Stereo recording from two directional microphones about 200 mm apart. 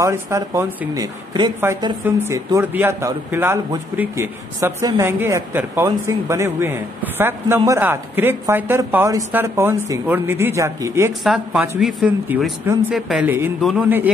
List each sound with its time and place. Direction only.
0.0 s speech: 15° right (ahead or behind)
11.2 s speech: 5° right (ahead or behind)